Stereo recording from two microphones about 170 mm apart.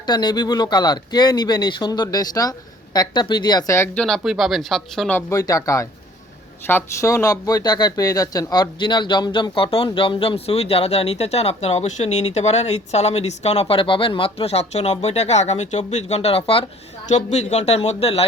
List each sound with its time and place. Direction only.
0.0 s speech: 25° left (ahead or behind)
4.0 s speech: centre (ahead or behind); by 16.6 s 35° left (ahead or behind)
17.1 s speech: 45° left (ahead or behind)